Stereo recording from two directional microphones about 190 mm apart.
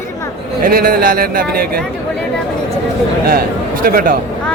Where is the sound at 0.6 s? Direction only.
50° right (ahead or behind).